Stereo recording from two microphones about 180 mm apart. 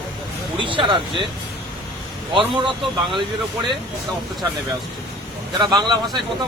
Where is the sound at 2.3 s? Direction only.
25° right (ahead or behind).